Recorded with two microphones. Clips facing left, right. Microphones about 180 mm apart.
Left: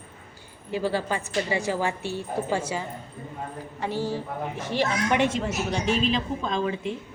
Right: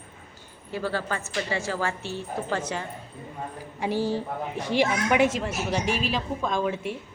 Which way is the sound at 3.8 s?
15° right (ahead or behind).